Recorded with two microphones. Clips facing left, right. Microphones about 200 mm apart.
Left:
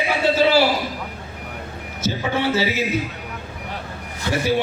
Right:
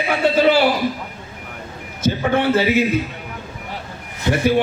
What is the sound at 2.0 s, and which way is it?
Speech, 55° right (ahead or behind).